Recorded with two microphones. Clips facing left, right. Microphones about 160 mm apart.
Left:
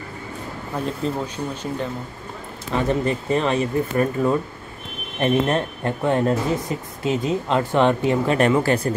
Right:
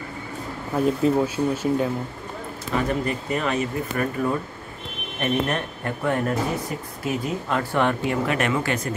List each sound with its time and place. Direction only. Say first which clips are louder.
0.7 s speech: right 5 dB; 5° right (ahead or behind)
2.9 s speech: left 4 dB; 30° left (ahead or behind)